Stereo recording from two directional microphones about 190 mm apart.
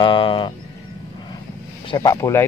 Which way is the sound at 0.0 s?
25° left (ahead or behind).